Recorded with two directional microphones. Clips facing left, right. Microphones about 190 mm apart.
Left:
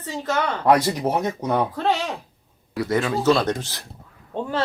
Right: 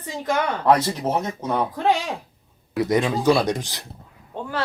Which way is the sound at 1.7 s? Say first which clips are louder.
Right 1 dB; 15° right (ahead or behind).